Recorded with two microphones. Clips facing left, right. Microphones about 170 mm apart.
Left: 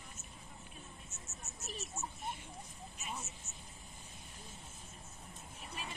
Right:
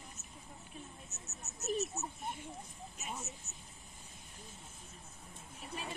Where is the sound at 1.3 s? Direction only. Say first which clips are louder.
Right 12 dB; 40° right (ahead or behind).